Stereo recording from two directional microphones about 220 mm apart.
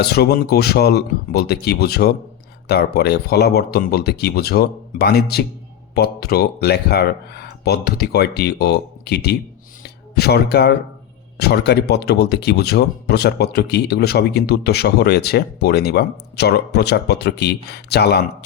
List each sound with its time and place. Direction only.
0.0 s speech: 45° left (ahead or behind)
9.8 s a sound: 45° left (ahead or behind)
11.3 s speech: 50° left (ahead or behind)